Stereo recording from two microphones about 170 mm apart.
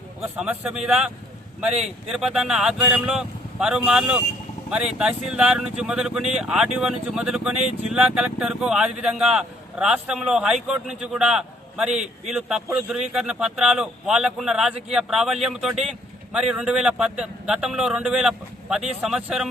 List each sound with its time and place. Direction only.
0.3 s speech: 10° right (ahead or behind)
2.1 s speech: centre (ahead or behind)
11.9 s a man's voice: 45° right (ahead or behind)
12.3 s speech: 5° right (ahead or behind)